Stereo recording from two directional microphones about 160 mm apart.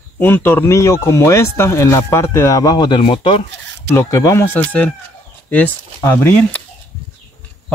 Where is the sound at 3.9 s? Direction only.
20° left (ahead or behind).